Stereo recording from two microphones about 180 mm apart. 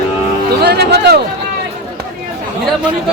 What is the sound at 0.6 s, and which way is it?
Speech, 65° right (ahead or behind).